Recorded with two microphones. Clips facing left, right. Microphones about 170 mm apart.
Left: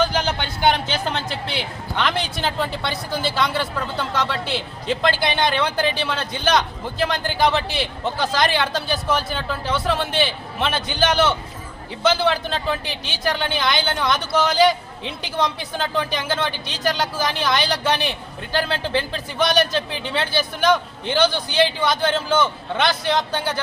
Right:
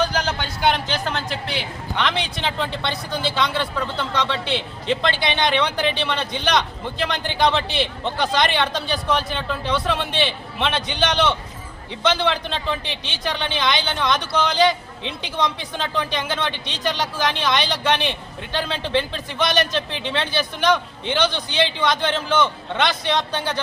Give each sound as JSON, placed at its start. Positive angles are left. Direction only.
{"t": 0.9, "sound": "a man's voice", "side_deg": 5}